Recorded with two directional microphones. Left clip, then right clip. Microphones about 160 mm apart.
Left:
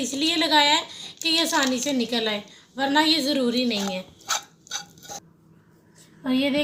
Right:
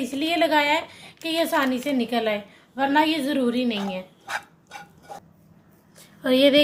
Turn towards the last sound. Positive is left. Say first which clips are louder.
# right 7 dB
turn(degrees=-40)  # may be behind; listen again after turning